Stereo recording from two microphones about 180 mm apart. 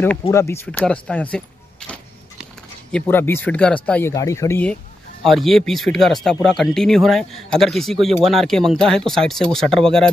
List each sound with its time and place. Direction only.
0.3 s speech: 15° left (ahead or behind)
4.1 s speech: 20° left (ahead or behind)
5.2 s speech: centre (ahead or behind)